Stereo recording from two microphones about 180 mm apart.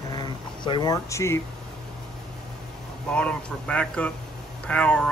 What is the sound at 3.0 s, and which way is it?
Speech, 5° left (ahead or behind).